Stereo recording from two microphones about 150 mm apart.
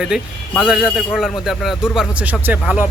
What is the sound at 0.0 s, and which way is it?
Speech, 5° right (ahead or behind).